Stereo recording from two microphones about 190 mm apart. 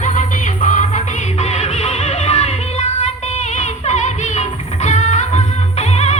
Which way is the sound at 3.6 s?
40° left (ahead or behind).